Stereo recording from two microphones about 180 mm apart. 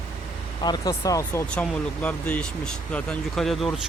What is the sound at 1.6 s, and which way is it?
Speech, 10° left (ahead or behind).